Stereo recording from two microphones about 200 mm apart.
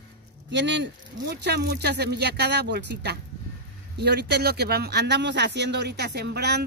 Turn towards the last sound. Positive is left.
turn(degrees=-55)  # may be behind; listen again after turning